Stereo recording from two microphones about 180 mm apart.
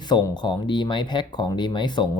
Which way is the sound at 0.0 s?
25° left (ahead or behind).